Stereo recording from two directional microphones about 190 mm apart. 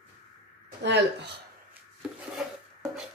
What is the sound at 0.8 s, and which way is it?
Speech, 65° right (ahead or behind).